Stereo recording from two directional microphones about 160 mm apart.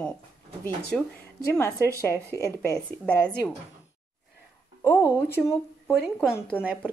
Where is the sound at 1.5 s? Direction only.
15° left (ahead or behind).